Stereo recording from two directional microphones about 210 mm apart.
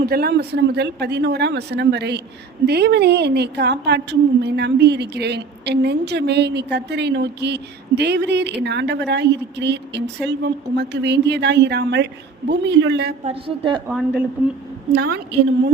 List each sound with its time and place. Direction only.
0.0 s a woman's voice: 45° right (ahead or behind)
13.2 s a woman's voice: 20° right (ahead or behind)
13.8 s speech: 5° right (ahead or behind)
14.9 s a woman's voice: 50° right (ahead or behind)